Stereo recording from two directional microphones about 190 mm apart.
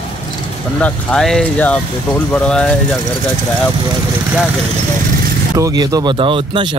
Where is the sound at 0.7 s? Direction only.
5° left (ahead or behind).